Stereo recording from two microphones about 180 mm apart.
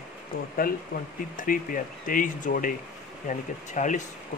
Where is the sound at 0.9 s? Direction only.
55° left (ahead or behind).